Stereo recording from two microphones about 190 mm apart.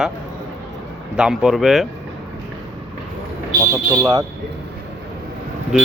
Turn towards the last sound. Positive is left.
turn(degrees=-5)  # may be behind; listen again after turning